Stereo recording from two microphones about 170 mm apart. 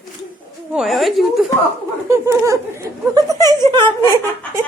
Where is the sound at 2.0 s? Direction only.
15° right (ahead or behind).